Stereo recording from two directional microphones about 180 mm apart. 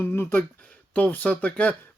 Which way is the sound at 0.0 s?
10° left (ahead or behind).